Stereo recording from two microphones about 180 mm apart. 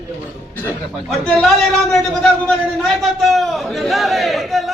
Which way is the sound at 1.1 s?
5° left (ahead or behind).